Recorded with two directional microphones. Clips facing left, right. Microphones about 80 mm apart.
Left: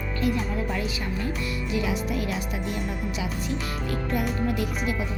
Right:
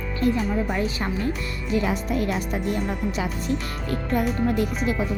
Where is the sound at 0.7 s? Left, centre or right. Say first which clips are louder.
Right 4 dB; right.